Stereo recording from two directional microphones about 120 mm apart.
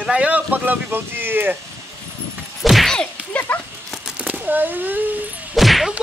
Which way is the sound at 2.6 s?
Centre (ahead or behind).